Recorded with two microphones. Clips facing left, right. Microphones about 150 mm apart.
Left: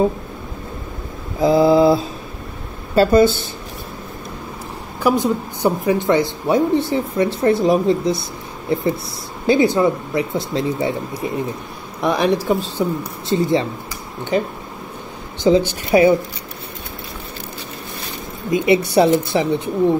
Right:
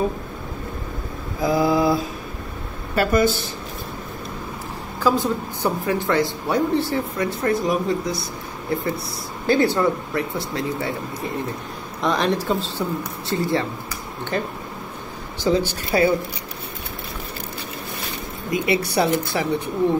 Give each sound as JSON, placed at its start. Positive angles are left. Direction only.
{"t": 1.4, "sound": "mantra", "side_deg": 25}
{"t": 2.9, "sound": "a woman's voice", "side_deg": 30}
{"t": 5.0, "sound": "a woman's voice", "side_deg": 15}
{"t": 9.5, "sound": "a woman's voice", "side_deg": 15}
{"t": 18.5, "sound": "a woman's voice", "side_deg": 25}